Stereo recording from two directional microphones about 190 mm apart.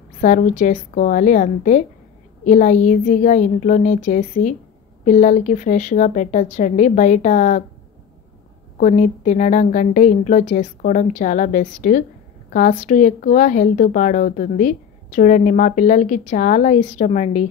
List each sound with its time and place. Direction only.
0.2 s speech: 40° left (ahead or behind)
8.7 s speech: 40° left (ahead or behind)